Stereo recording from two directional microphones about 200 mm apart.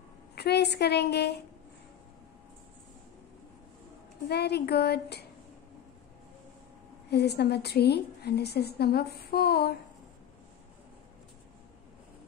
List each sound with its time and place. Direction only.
0.4 s a woman's voice: 55° left (ahead or behind)
4.3 s a woman's voice: 55° left (ahead or behind)
7.1 s a woman's voice: 55° left (ahead or behind)